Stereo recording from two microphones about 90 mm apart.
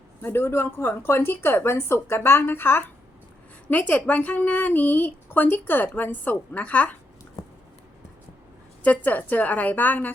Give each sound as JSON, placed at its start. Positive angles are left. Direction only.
{"t": 0.2, "sound": "a woman's voice", "side_deg": 25}
{"t": 8.8, "sound": "a woman's voice", "side_deg": 15}